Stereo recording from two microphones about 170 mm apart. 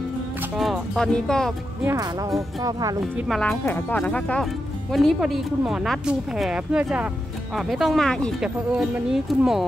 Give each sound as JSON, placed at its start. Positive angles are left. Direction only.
{"t": 0.6, "sound": "speech", "side_deg": 0}
{"t": 1.9, "sound": "speech", "side_deg": -20}
{"t": 3.2, "sound": "speech", "side_deg": 0}